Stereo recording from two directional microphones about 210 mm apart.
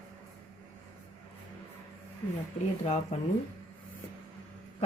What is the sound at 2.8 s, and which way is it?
Speech, 30° left (ahead or behind).